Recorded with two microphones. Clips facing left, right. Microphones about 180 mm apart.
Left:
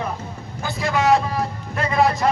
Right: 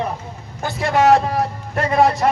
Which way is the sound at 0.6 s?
50° right (ahead or behind).